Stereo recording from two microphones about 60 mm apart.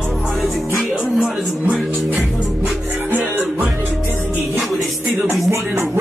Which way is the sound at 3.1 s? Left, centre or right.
Right.